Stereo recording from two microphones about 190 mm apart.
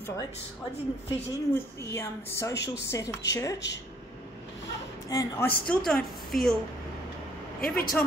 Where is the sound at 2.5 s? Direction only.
65° left (ahead or behind).